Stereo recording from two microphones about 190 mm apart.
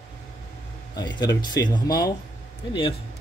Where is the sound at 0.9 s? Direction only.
20° left (ahead or behind).